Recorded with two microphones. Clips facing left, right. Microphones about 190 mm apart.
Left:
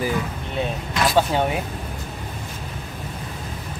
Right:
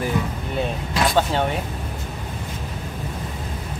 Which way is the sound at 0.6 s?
Centre (ahead or behind).